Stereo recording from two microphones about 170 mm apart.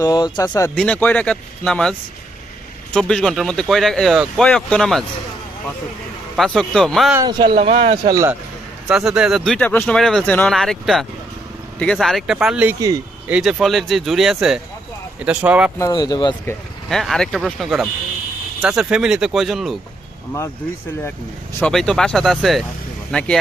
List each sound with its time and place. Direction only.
0.0 s speech: 20° left (ahead or behind)
0.8 s speech: 10° left (ahead or behind)
6.3 s speech: centre (ahead or behind)
7.3 s speech: 25° right (ahead or behind)
8.1 s speech: 15° right (ahead or behind)
8.9 s speech: 5° right (ahead or behind)
15.8 s speech: 25° left (ahead or behind)
16.9 s speech: centre (ahead or behind)
21.6 s speech: 5° left (ahead or behind)